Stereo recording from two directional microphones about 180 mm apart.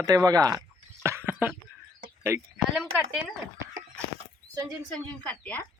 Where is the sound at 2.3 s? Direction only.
15° right (ahead or behind).